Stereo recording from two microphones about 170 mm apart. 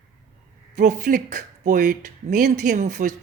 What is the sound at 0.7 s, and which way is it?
Speech, 50° right (ahead or behind).